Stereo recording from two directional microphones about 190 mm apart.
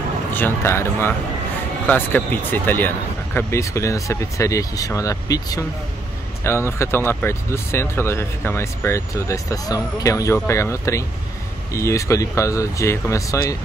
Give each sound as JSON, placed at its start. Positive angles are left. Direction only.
{"t": 0.3, "sound": "speech", "side_deg": 10}